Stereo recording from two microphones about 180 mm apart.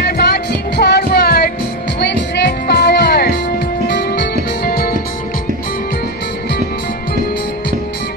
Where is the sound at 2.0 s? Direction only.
70° left (ahead or behind).